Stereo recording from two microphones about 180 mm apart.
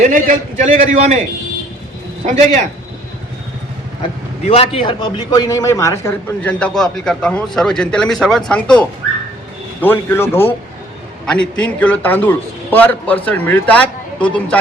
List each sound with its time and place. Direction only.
0.0 s a man's voice: 45° right (ahead or behind)
2.2 s a man's voice: 40° right (ahead or behind)
4.4 s a man's voice: 35° left (ahead or behind); by 14.6 s 5° left (ahead or behind)